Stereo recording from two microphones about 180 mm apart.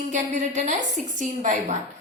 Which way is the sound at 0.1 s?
40° right (ahead or behind).